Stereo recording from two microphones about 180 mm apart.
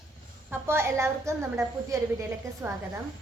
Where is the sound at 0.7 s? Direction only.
15° right (ahead or behind).